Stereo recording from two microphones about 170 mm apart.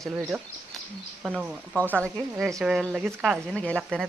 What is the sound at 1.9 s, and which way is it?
A woman's voice, 5° left (ahead or behind).